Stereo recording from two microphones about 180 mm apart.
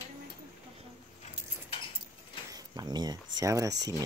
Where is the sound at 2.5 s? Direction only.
20° right (ahead or behind).